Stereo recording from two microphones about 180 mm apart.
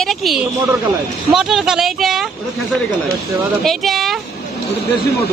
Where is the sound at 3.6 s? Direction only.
Centre (ahead or behind).